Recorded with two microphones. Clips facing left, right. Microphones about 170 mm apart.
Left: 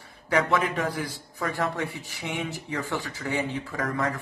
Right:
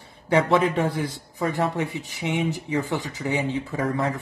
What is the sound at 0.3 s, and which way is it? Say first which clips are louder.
Speech: right 4 dB; 30° right (ahead or behind).